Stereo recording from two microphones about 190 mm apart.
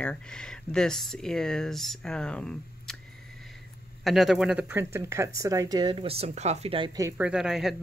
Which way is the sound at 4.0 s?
Centre (ahead or behind).